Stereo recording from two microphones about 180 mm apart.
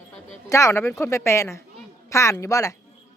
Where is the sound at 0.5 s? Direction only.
15° left (ahead or behind).